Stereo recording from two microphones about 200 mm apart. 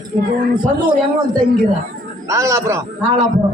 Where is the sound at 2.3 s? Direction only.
15° right (ahead or behind).